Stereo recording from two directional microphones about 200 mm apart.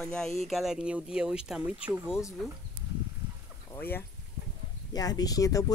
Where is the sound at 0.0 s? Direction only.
5° left (ahead or behind).